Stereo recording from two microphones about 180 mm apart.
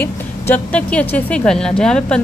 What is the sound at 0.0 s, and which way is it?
Speech, 10° left (ahead or behind).